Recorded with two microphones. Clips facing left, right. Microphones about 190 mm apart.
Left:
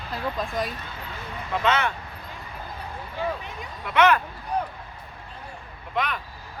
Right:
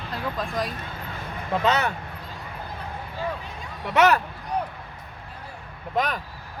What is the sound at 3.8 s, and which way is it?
Speech, 40° right (ahead or behind).